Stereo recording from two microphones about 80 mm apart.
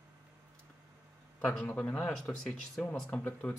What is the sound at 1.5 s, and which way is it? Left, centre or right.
A man's voice, centre.